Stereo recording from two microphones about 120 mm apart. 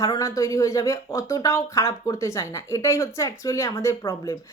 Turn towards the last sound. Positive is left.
turn(degrees=25)  # may be behind; listen again after turning